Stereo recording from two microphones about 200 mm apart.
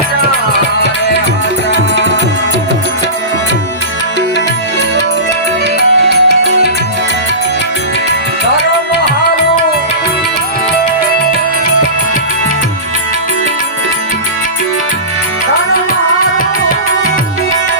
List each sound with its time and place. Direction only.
1.7 s tabla: 65° right (ahead or behind)
6.0 s music: 60° right (ahead or behind)